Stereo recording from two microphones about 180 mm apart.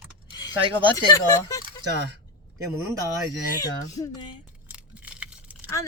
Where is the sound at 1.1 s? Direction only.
20° left (ahead or behind).